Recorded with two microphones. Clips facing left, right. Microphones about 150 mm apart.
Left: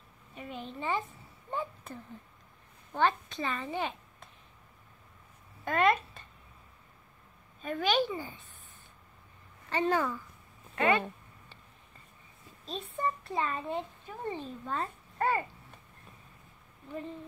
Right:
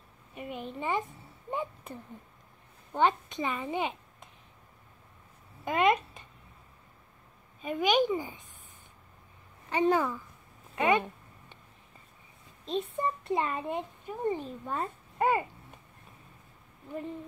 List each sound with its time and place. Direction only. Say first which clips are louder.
0.3 s a sound: right 3 dB; 10° right (ahead or behind)
2.9 s a child's voice: right 2 dB; 15° right (ahead or behind)
5.7 s speech: right 1 dB; 15° right (ahead or behind)
7.6 s a child's voice: right 3 dB; 15° right (ahead or behind)
9.7 s a child's voice: right 3 dB; 10° right (ahead or behind)
10.8 s a sound: right 1 dB; 15° right (ahead or behind)
12.6 s a child's voice: right 3 dB; 20° right (ahead or behind)